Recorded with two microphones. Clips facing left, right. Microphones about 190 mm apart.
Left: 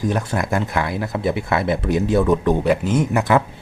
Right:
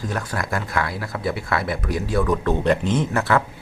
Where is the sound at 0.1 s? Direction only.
20° left (ahead or behind).